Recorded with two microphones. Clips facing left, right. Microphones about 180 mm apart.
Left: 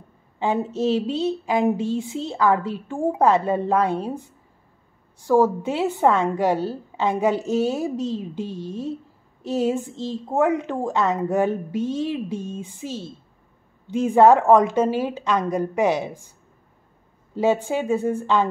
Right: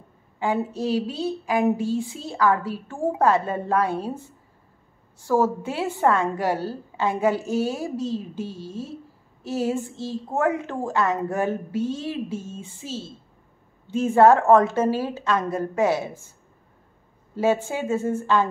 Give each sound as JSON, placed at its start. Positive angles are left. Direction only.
{"t": 0.4, "sound": "a woman's voice", "side_deg": 20}
{"t": 17.4, "sound": "a woman's voice", "side_deg": 15}